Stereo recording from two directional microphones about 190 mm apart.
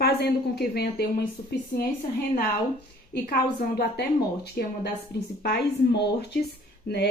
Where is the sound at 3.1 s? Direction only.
55° left (ahead or behind).